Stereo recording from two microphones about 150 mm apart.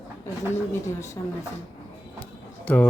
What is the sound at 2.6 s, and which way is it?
Speech, 10° left (ahead or behind).